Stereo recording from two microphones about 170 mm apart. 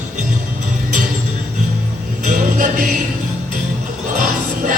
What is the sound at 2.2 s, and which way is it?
Music, 45° right (ahead or behind).